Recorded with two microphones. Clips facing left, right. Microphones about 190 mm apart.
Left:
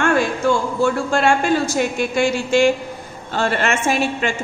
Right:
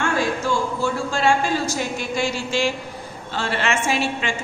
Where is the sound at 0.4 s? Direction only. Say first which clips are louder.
Left 8 dB; 60° left (ahead or behind).